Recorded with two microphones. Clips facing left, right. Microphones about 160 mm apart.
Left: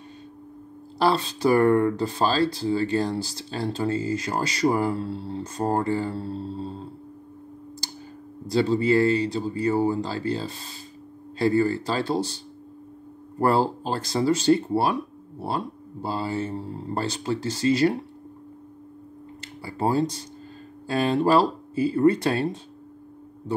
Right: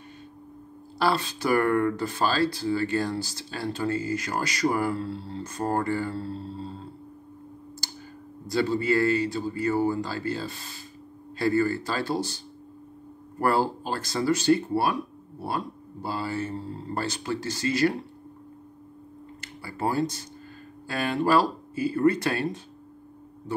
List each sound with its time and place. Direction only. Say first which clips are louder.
0.9 s speech: left 3 dB; 25° left (ahead or behind)
8.5 s speech: left 3 dB; 25° left (ahead or behind)
13.4 s speech: left 3 dB; 25° left (ahead or behind)
19.6 s speech: left 3 dB; 25° left (ahead or behind)